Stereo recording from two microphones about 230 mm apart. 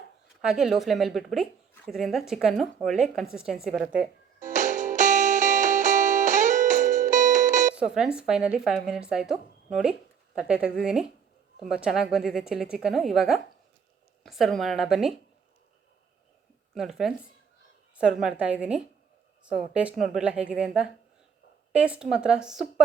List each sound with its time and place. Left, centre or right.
0.4 s a woman's voice: centre
4.4 s music: right
7.9 s a woman's voice: centre
16.7 s a woman's voice: centre